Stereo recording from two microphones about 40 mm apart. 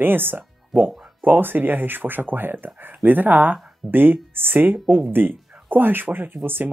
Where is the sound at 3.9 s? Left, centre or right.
Right.